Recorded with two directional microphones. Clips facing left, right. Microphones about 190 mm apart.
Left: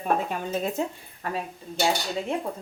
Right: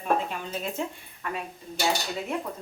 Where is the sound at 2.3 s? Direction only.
30° left (ahead or behind).